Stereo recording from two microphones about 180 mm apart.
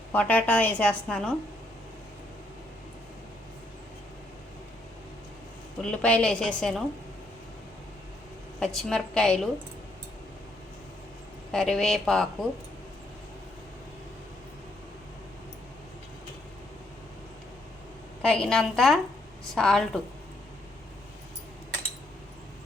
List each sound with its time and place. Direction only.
0.1 s a woman's voice: 10° left (ahead or behind)
5.8 s a woman's voice: 5° left (ahead or behind)
8.5 s a woman's voice: 5° left (ahead or behind)
11.5 s a woman's voice: 5° left (ahead or behind)
18.2 s a woman's voice: 5° left (ahead or behind)